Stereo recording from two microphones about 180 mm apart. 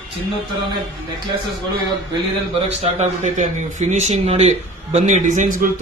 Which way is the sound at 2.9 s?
40° right (ahead or behind).